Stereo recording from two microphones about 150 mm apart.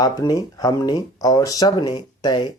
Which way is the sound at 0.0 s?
25° left (ahead or behind).